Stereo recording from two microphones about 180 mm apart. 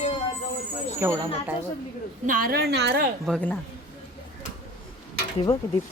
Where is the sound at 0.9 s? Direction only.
15° right (ahead or behind).